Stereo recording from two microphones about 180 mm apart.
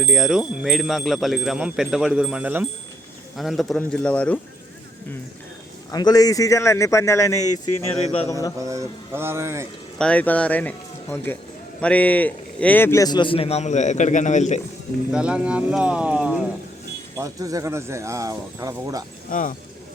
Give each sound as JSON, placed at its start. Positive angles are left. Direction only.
{"t": 0.0, "sound": "wind chime", "side_deg": 0}
{"t": 5.9, "sound": "a man's voice", "side_deg": 20}
{"t": 8.5, "sound": "speech", "side_deg": -15}
{"t": 10.0, "sound": "a man's voice", "side_deg": 5}
{"t": 15.1, "sound": "wind chime", "side_deg": -5}
{"t": 17.2, "sound": "speech", "side_deg": -20}
{"t": 19.3, "sound": "speech", "side_deg": 45}